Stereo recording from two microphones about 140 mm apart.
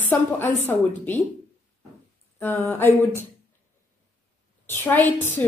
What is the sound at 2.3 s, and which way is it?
Speech, 15° left (ahead or behind).